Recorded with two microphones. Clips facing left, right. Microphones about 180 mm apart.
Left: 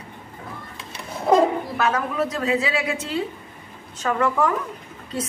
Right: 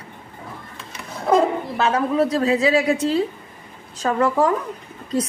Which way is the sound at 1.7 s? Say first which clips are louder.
Right 5 dB; 30° right (ahead or behind).